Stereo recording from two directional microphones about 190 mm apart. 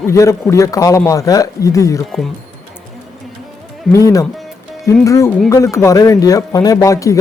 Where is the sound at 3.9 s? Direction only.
15° left (ahead or behind).